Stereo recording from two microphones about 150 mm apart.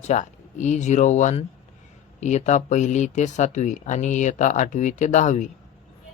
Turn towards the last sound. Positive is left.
turn(degrees=55)  # may be behind; listen again after turning